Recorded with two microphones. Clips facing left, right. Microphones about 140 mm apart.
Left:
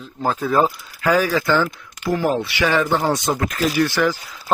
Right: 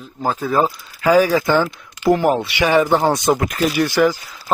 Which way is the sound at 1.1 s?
10° right (ahead or behind).